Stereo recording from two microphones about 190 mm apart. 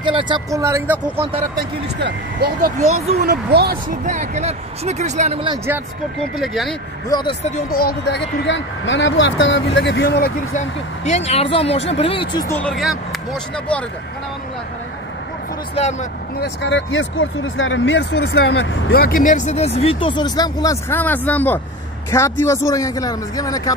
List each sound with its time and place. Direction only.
0.0 s speech: 25° right (ahead or behind)
1.5 s speech: 60° right (ahead or behind); by 5.4 s 40° right (ahead or behind)
6.4 s speech: centre (ahead or behind)
7.1 s speech: 20° left (ahead or behind)
7.8 s speech: 65° left (ahead or behind); by 9.6 s 80° left
9.8 s speech: 65° left (ahead or behind)
11.1 s speech: 35° left (ahead or behind)
12.4 s a man's voice: 10° left (ahead or behind)
15.7 s speech: 35° left (ahead or behind)
16.3 s a man's voice: 70° left (ahead or behind); by 23.7 s 20° left (ahead or behind)